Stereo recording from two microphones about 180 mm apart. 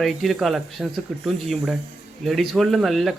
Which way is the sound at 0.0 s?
Centre (ahead or behind).